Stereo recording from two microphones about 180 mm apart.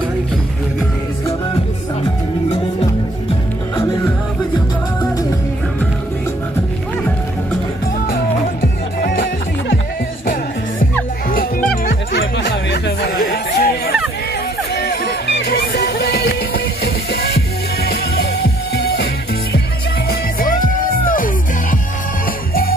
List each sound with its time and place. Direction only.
8.1 s music: 55° left (ahead or behind)
11.2 s music: 55° left (ahead or behind)
14.8 s music: 70° left (ahead or behind)
20.1 s music: 50° left (ahead or behind)